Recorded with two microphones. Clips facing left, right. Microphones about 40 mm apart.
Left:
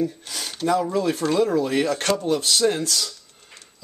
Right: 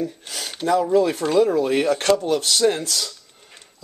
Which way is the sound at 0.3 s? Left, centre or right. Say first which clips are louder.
Even; right.